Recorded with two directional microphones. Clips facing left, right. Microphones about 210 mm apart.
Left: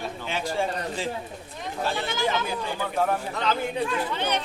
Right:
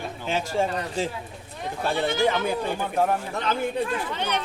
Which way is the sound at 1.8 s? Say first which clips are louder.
Right 5 dB; 55° right (ahead or behind).